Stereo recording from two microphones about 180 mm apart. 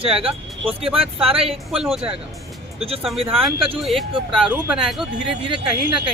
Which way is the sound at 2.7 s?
35° right (ahead or behind).